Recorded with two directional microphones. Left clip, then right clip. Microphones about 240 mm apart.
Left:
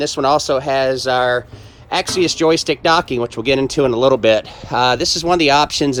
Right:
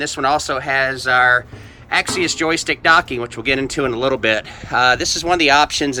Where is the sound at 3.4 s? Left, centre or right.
Right.